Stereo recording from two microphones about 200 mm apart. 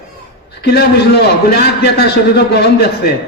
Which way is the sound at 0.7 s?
55° left (ahead or behind).